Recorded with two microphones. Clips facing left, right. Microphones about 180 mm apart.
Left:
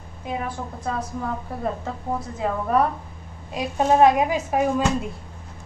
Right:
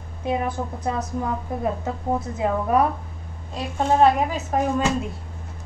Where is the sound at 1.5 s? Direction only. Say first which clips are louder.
Right 2 dB; 15° right (ahead or behind).